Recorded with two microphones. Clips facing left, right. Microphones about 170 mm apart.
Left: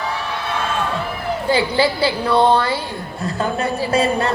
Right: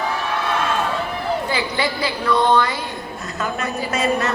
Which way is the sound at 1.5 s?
30° left (ahead or behind).